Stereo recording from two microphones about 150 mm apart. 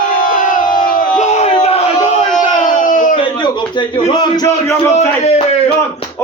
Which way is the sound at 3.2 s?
30° left (ahead or behind).